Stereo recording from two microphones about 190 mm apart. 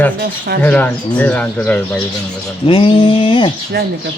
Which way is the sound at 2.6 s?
25° left (ahead or behind).